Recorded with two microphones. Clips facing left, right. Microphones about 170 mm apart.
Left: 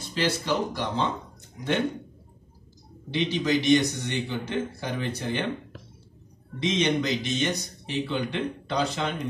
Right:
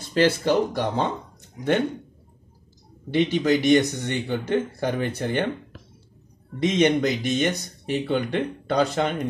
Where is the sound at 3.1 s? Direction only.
55° right (ahead or behind).